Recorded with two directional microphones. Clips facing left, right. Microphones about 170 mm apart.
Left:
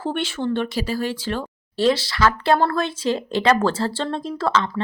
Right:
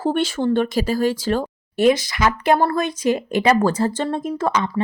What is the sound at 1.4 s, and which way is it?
Speech, 15° right (ahead or behind).